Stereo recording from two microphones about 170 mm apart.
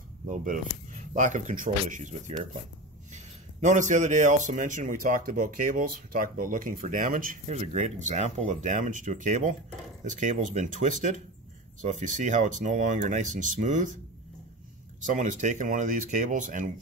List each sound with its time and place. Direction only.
1.1 s speech: 45° right (ahead or behind)
3.6 s speech: 45° right (ahead or behind)
15.0 s speech: 50° right (ahead or behind)